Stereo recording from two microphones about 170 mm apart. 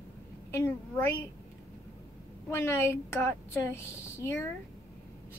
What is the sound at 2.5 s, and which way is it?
A woman's voice, 15° left (ahead or behind).